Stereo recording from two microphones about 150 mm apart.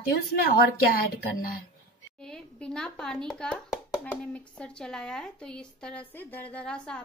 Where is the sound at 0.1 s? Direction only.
90° left.